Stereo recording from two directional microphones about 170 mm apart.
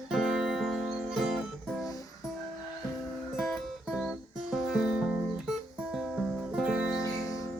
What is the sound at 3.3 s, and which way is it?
Music, centre (ahead or behind).